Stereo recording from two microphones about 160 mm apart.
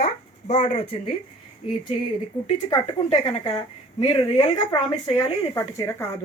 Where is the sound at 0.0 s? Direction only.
45° left (ahead or behind).